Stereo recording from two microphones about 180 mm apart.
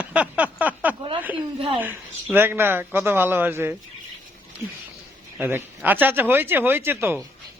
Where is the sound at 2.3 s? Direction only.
10° right (ahead or behind).